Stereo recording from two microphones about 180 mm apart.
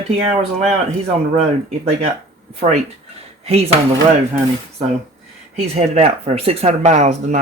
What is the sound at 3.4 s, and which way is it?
Speech, 35° right (ahead or behind).